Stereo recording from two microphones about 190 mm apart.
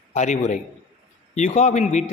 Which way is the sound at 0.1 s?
40° left (ahead or behind).